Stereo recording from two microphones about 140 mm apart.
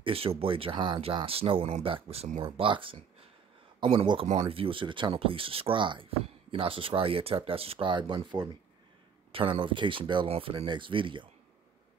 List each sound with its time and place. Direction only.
0.0 s speech: 40° right (ahead or behind)
2.4 s speech: 40° right (ahead or behind)